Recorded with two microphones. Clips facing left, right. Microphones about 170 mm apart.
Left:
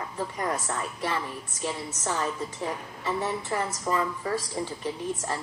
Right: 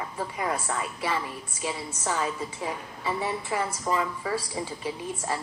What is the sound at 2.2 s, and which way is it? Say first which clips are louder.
A woman's voice: even; 10° right (ahead or behind).